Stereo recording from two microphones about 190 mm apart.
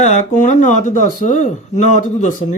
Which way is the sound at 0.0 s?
40° left (ahead or behind).